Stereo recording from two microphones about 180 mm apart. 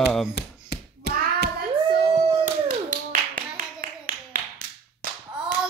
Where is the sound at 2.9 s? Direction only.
45° right (ahead or behind).